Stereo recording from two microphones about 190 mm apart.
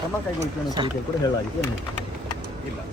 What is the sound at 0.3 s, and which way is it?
Speech, 20° right (ahead or behind).